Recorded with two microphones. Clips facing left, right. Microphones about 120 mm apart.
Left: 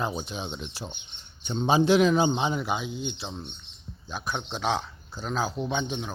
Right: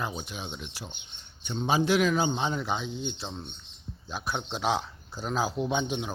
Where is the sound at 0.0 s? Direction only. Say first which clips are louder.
Left 4 dB; 30° left (ahead or behind).